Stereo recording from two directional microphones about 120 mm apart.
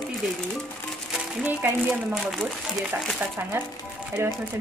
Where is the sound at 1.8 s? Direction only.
Centre (ahead or behind).